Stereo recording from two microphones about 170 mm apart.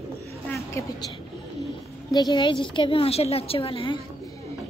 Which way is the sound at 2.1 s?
25° left (ahead or behind).